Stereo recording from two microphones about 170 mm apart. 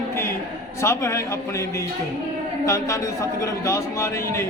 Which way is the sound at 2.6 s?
20° left (ahead or behind).